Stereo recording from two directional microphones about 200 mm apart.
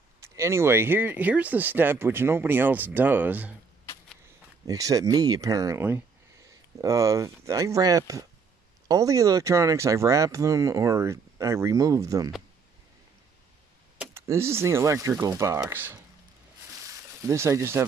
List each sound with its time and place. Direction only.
0.2 s speech: 15° right (ahead or behind)
4.6 s speech: 15° right (ahead or behind)
13.9 s speech: 15° right (ahead or behind)
17.2 s speech: 15° right (ahead or behind)